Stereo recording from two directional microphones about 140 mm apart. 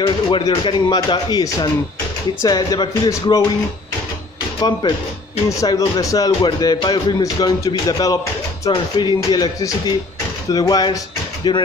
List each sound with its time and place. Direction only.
0.0 s speech: 35° left (ahead or behind)
4.6 s speech: 30° left (ahead or behind)